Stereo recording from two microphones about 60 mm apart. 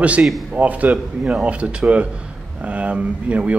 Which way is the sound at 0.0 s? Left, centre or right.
Right.